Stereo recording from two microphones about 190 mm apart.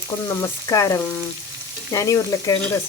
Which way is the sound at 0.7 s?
15° left (ahead or behind).